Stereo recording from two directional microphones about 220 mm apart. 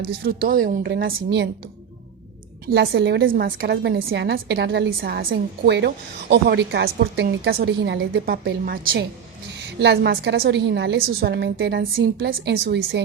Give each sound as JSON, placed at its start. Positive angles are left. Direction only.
{"t": 0.1, "sound": "a woman's voice", "side_deg": -45}
{"t": 2.6, "sound": "a woman's voice", "side_deg": -45}